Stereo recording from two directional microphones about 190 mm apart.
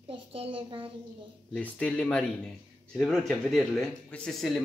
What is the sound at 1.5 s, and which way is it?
Speech, 5° left (ahead or behind).